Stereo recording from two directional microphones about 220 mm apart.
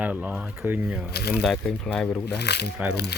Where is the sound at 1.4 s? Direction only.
Centre (ahead or behind).